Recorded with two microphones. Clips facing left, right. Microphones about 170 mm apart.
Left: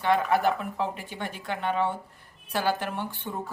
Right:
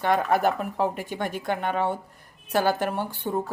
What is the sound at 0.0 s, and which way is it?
Speech, 45° right (ahead or behind).